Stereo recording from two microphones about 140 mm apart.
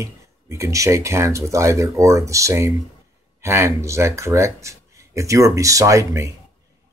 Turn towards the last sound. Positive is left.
turn(degrees=-20)  # may be behind; listen again after turning